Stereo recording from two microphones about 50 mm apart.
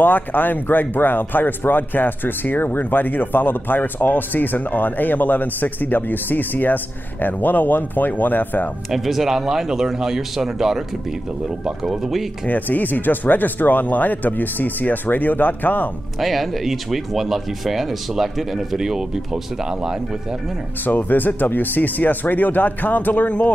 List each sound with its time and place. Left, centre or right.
0.0 s speech: left
8.9 s speech: centre
12.4 s speech: left
16.2 s speech: centre
20.8 s speech: left